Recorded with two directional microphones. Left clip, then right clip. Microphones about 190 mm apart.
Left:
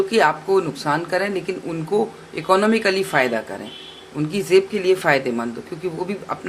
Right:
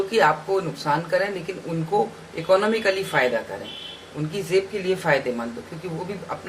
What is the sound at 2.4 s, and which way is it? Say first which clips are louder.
Speech: left 2 dB; 50° left (ahead or behind).